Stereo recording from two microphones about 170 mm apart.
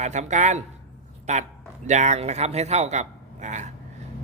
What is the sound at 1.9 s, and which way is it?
Speech, 45° right (ahead or behind).